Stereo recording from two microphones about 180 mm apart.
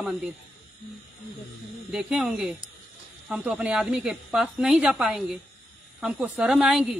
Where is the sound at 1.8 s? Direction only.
5° right (ahead or behind).